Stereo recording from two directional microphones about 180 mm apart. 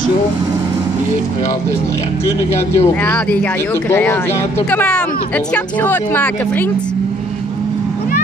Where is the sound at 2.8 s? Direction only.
10° left (ahead or behind).